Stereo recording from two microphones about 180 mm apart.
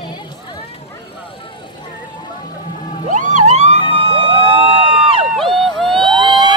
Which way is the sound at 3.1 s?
45° right (ahead or behind).